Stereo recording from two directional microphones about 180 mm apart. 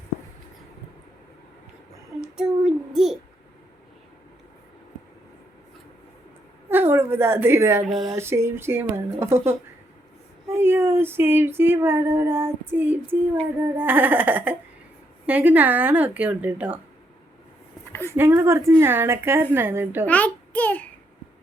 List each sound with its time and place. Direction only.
2.3 s child singing: 5° right (ahead or behind)
6.7 s a woman's voice: 10° right (ahead or behind)
7.9 s a sound: centre (ahead or behind)
8.1 s speech: 15° right (ahead or behind)
18.1 s speech: 15° right (ahead or behind)
20.1 s a child's voice: 10° left (ahead or behind)